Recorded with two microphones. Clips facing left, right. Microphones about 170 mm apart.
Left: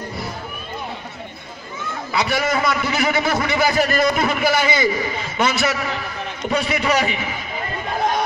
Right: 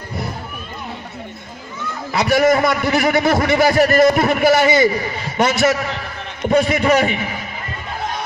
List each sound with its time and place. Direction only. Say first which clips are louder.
2.1 s a man's voice: right 7 dB; 45° right (ahead or behind)